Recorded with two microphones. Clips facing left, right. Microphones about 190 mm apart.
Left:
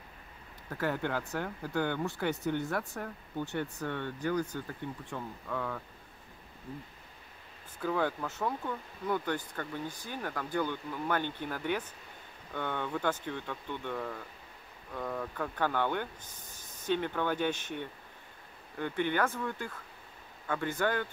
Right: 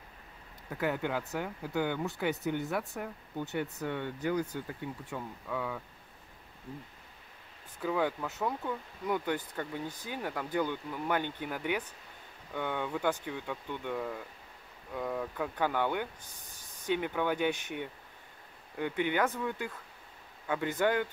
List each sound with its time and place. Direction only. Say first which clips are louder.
0.7 s speech: even; 10° right (ahead or behind)
7.8 s speech: even; 5° right (ahead or behind)
9.0 s speech: even; 15° right (ahead or behind)